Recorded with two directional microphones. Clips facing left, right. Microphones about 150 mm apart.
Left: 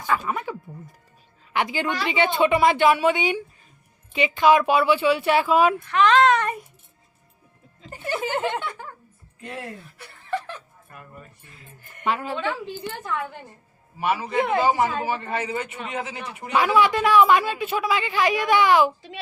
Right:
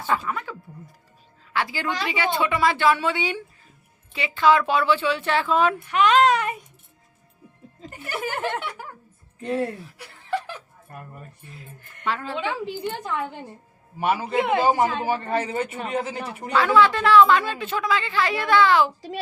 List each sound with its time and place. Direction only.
0.3 s a sound: 20° left (ahead or behind)
1.5 s a woman's voice: 20° left (ahead or behind)
5.9 s speech: 10° right (ahead or behind)
7.9 s speech: 30° left (ahead or behind)
8.8 s music: 5° right (ahead or behind)
10.2 s snicker: 15° right (ahead or behind)
11.8 s speech: 10° left (ahead or behind)
12.4 s a woman's voice: 15° right (ahead or behind)
14.3 s a woman's voice: centre (ahead or behind)
15.3 s speech: 35° right (ahead or behind)
16.5 s speech: 15° left (ahead or behind)